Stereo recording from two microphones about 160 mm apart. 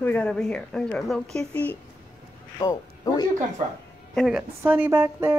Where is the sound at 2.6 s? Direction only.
20° left (ahead or behind).